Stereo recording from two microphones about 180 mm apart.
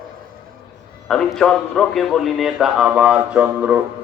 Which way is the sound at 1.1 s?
5° left (ahead or behind).